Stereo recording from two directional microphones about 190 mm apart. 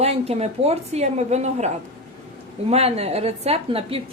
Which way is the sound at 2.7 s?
35° right (ahead or behind).